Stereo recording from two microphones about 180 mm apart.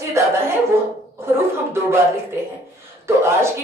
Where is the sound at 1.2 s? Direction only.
15° right (ahead or behind).